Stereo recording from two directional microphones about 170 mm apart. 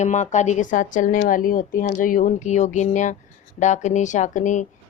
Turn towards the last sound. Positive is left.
turn(degrees=45)  # may be behind; listen again after turning